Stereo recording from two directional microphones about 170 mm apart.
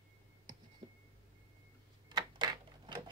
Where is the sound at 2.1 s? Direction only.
25° right (ahead or behind).